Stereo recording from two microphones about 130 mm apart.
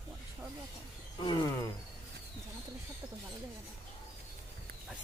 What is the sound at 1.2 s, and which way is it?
Speech, 35° left (ahead or behind).